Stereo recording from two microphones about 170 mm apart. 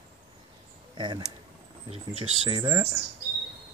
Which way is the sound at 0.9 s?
25° right (ahead or behind).